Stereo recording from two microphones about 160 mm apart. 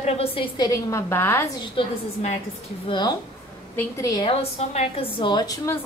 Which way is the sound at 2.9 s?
25° left (ahead or behind).